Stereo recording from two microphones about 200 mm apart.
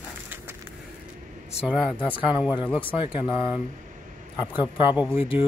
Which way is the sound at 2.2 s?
5° right (ahead or behind).